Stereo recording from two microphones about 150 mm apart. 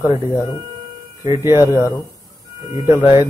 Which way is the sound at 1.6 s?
20° left (ahead or behind).